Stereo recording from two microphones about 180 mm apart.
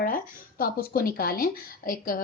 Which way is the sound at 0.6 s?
55° left (ahead or behind).